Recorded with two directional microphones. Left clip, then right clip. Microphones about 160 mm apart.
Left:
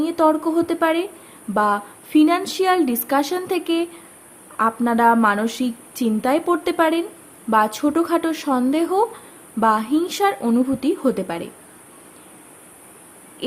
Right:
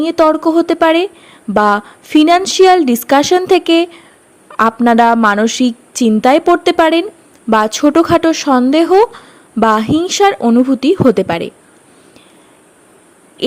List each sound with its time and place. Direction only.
0.0 s speech: 45° right (ahead or behind)